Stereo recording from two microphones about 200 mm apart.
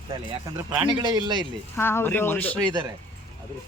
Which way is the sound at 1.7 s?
10° left (ahead or behind).